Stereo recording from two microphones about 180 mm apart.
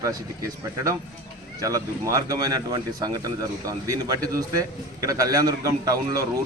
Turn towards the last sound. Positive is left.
turn(degrees=-20)  # may be behind; listen again after turning